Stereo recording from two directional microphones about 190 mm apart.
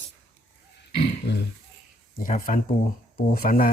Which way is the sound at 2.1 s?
45° left (ahead or behind).